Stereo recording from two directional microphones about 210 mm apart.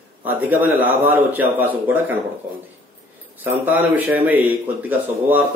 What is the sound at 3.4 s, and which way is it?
A man's voice, 10° right (ahead or behind).